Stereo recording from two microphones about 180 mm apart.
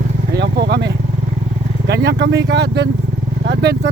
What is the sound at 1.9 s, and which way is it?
Speech, 65° right (ahead or behind).